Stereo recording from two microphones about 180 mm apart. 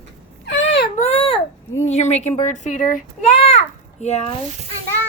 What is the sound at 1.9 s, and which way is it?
Speech, 40° left (ahead or behind).